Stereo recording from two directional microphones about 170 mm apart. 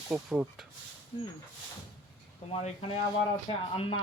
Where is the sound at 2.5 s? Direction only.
35° left (ahead or behind).